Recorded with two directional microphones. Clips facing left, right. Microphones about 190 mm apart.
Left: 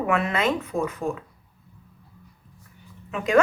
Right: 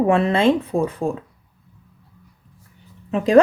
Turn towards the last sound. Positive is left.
turn(degrees=-35)  # may be behind; listen again after turning